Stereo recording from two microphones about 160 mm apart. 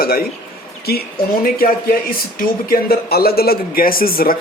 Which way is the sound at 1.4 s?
65° left (ahead or behind).